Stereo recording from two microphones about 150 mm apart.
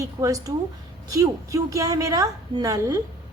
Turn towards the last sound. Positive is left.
turn(degrees=-25)  # may be behind; listen again after turning